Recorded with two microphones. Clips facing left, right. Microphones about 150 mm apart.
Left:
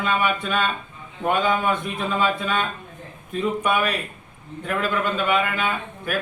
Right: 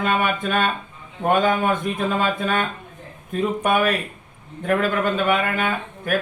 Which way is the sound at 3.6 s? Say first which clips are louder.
Right 3 dB; 45° right (ahead or behind).